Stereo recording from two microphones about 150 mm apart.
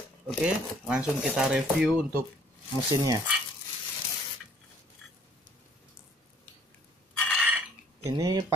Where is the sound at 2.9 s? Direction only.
25° right (ahead or behind).